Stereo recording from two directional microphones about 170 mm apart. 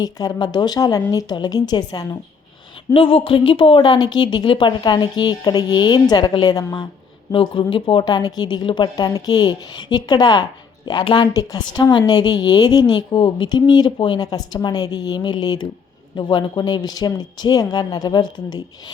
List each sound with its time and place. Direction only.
0.0 s a woman's voice: 20° left (ahead or behind)